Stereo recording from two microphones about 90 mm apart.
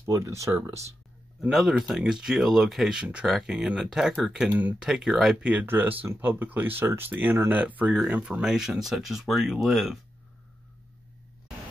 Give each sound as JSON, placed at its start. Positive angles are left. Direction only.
{"t": 0.0, "sound": "speech", "side_deg": -35}
{"t": 1.5, "sound": "speech", "side_deg": 0}
{"t": 4.5, "sound": "speech", "side_deg": -20}
{"t": 4.8, "sound": "speech", "side_deg": -5}
{"t": 5.5, "sound": "speech", "side_deg": -20}